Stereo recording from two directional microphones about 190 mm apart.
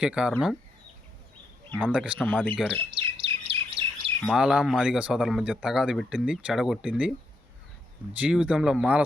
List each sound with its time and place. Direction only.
0.0 s speech: 5° right (ahead or behind)
1.8 s speech: 5° right (ahead or behind)
2.1 s speech: 5° left (ahead or behind)
2.9 s chirp: 30° right (ahead or behind)
4.2 s speech: centre (ahead or behind)
8.1 s speech: 5° right (ahead or behind)